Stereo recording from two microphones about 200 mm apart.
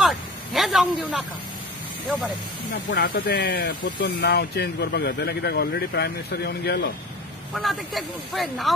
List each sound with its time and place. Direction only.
0.0 s a sound: centre (ahead or behind)
2.7 s speech: 60° left (ahead or behind)
7.5 s speech: centre (ahead or behind)